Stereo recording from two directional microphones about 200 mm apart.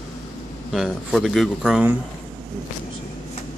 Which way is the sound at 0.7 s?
Centre (ahead or behind).